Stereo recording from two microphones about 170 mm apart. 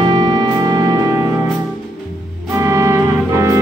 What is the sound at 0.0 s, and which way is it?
Music, 30° right (ahead or behind).